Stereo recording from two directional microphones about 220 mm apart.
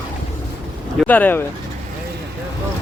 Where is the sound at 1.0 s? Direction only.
10° left (ahead or behind).